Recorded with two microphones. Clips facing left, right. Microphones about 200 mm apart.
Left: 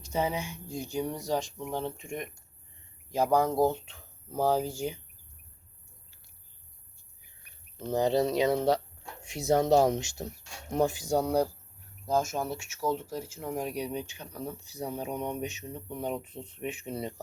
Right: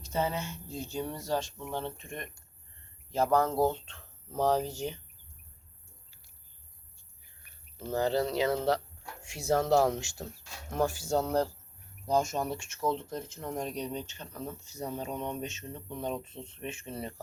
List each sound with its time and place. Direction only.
0.0 s speech: 15° left (ahead or behind)
7.8 s speech: 20° left (ahead or behind)